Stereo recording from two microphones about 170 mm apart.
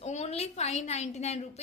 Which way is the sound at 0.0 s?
40° left (ahead or behind).